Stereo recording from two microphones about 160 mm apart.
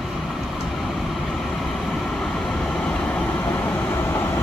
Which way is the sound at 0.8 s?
Centre (ahead or behind).